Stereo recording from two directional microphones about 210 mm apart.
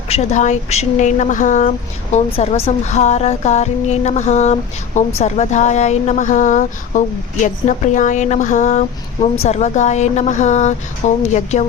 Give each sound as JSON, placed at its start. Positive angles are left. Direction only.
{"t": 0.1, "sound": "speech", "side_deg": 30}